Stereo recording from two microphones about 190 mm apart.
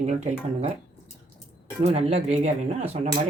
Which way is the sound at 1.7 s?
30° right (ahead or behind).